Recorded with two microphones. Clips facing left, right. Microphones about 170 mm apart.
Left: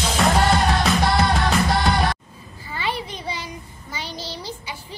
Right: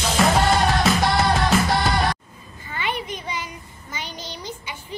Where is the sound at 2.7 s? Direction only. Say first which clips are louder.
Even; 35° left (ahead or behind).